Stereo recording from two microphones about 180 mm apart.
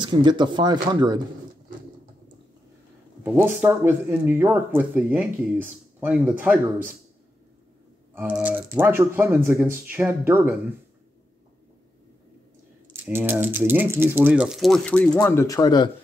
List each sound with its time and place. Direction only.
0.0 s speech: 25° right (ahead or behind)
3.3 s speech: 10° right (ahead or behind)
8.1 s speech: 10° right (ahead or behind)
12.9 s speech: 10° right (ahead or behind); by 15.0 s 5° left (ahead or behind)
15.1 s speech: 15° left (ahead or behind)